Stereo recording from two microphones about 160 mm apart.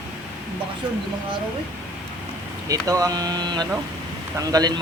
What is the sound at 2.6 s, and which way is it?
Speech, 20° right (ahead or behind).